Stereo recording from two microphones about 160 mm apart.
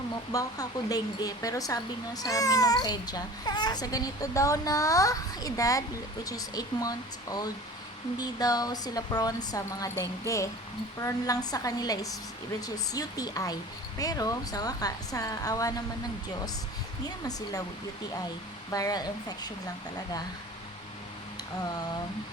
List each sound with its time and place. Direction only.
0.3 s speech: 20° left (ahead or behind)
17.1 s speech: 25° left (ahead or behind)
18.7 s speech: 20° left (ahead or behind)